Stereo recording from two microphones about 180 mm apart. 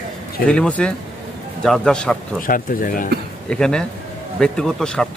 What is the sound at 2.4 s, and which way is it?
Speech, 50° left (ahead or behind).